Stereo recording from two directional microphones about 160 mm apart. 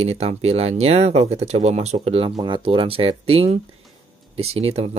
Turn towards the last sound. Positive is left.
turn(degrees=-40)  # may be behind; listen again after turning